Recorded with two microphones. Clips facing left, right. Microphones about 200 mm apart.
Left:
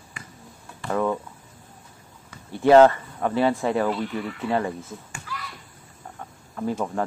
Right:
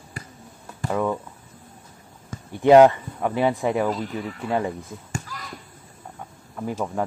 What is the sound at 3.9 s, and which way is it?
Speech, 40° right (ahead or behind).